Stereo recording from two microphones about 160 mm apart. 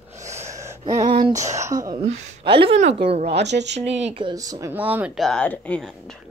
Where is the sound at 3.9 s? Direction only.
40° right (ahead or behind); by 4.7 s 20° right (ahead or behind).